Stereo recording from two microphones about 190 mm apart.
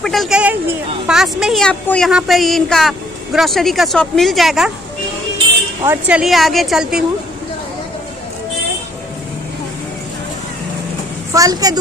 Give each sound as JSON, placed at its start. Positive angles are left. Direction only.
{"t": 0.0, "sound": "a woman's voice", "side_deg": 0}
{"t": 5.9, "sound": "a woman's voice", "side_deg": -5}
{"t": 11.3, "sound": "a woman's voice", "side_deg": -20}